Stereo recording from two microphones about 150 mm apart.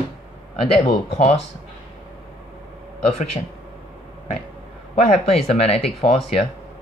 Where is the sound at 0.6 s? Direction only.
35° left (ahead or behind).